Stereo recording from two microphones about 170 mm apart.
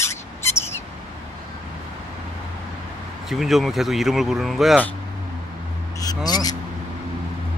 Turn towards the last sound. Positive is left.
turn(degrees=20)  # may be behind; listen again after turning